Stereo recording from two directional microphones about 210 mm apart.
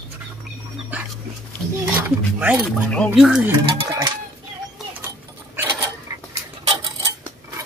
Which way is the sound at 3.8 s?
20° right (ahead or behind).